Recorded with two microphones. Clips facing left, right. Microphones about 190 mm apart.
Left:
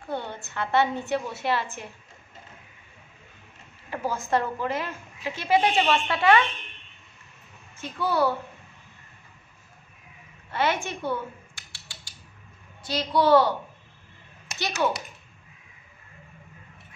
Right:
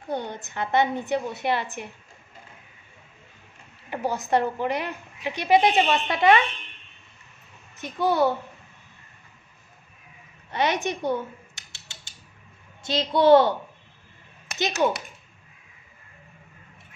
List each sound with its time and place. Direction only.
0.1 s a woman's voice: 15° right (ahead or behind)
3.9 s a woman's voice: 20° right (ahead or behind)
7.8 s a woman's voice: 20° right (ahead or behind)
10.5 s scissors: 20° right (ahead or behind)
12.8 s a woman's voice: 25° right (ahead or behind)
14.5 s a sound: 60° right (ahead or behind)